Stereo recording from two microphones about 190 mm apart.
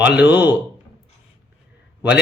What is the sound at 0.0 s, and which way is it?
Speech, 5° right (ahead or behind).